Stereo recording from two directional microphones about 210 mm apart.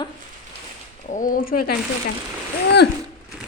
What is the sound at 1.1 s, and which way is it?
Speech, 40° left (ahead or behind).